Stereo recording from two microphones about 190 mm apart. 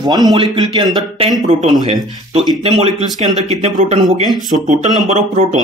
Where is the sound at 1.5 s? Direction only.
35° right (ahead or behind).